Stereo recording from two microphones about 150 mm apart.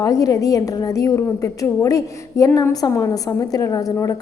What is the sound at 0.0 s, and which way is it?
A woman's voice, 25° left (ahead or behind).